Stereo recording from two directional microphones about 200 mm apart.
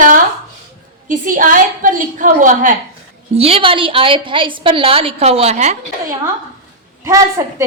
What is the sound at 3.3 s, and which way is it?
A woman's voice, 30° right (ahead or behind).